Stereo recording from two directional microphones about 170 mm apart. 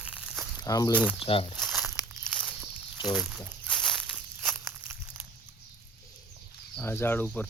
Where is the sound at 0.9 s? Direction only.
5° right (ahead or behind).